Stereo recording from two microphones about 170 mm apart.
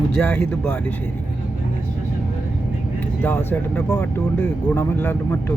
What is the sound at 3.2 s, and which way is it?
Speech, 10° left (ahead or behind).